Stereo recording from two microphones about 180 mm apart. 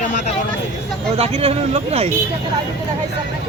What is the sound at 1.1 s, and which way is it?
Speech, 35° right (ahead or behind).